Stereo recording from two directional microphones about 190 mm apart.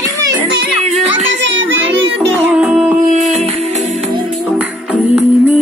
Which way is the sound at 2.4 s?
5° right (ahead or behind).